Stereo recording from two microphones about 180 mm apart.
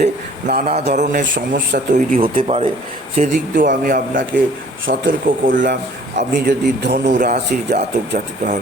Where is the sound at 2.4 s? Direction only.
35° right (ahead or behind).